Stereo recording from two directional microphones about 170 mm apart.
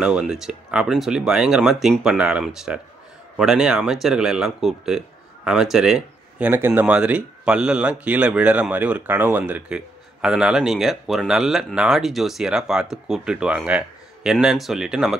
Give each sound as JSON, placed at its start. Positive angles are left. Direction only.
{"t": 0.0, "sound": "speech", "side_deg": -5}